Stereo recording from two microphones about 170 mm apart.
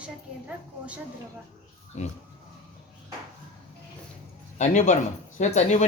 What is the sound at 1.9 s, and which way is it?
Speech, 40° left (ahead or behind).